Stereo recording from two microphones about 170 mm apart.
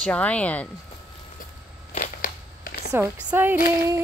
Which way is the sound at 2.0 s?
55° left (ahead or behind).